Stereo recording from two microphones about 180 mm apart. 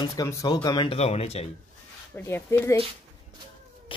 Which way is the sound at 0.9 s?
35° left (ahead or behind).